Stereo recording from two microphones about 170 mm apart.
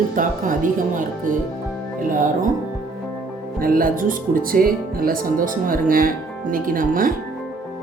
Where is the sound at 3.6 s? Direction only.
55° right (ahead or behind).